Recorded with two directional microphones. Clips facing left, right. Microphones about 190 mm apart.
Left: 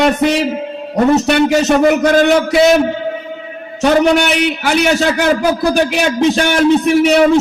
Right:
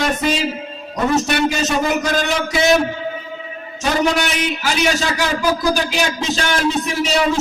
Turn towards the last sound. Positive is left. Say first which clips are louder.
# left 9 dB
turn(degrees=60)  # may be behind; listen again after turning